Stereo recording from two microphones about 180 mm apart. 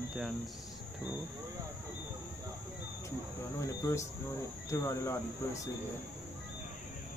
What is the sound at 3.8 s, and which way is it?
Speech, 15° left (ahead or behind).